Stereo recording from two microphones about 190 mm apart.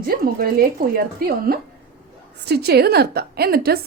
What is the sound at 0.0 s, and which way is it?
A woman's voice, 50° right (ahead or behind).